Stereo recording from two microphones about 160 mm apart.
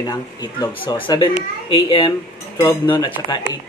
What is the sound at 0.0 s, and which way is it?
Speech, 25° left (ahead or behind).